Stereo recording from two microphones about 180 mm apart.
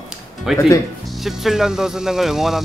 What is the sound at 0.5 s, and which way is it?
Speech, 15° left (ahead or behind).